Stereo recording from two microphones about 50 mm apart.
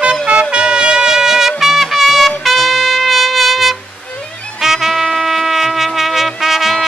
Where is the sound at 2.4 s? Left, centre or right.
Centre.